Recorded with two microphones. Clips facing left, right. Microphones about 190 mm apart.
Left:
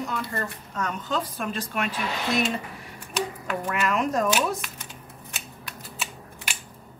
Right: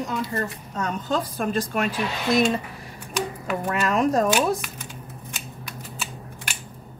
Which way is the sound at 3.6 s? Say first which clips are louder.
Right 4 dB; 35° right (ahead or behind).